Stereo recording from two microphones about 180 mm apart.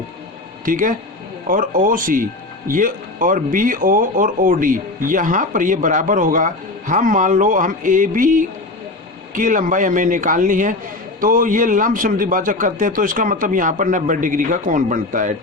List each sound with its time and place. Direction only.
0.6 s speech: 50° right (ahead or behind)